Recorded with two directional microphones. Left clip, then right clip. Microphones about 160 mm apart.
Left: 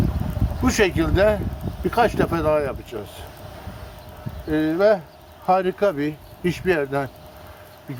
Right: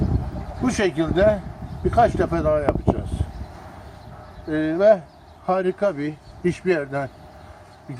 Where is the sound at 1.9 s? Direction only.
25° left (ahead or behind).